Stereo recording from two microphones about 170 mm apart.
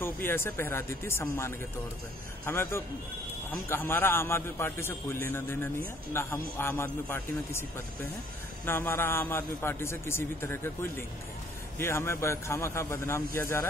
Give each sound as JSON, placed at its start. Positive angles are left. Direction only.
{"t": 0.0, "sound": "a man's voice", "side_deg": 15}